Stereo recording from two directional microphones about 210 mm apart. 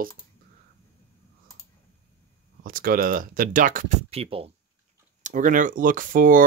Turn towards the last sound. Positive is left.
turn(degrees=-40)  # may be behind; listen again after turning